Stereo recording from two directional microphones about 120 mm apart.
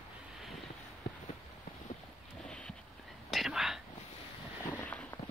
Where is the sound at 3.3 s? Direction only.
Centre (ahead or behind).